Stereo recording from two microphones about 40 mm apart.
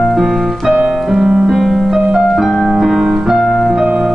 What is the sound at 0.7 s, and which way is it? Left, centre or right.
Music, centre.